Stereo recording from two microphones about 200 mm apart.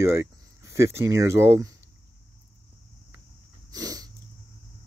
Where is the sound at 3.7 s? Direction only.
20° right (ahead or behind).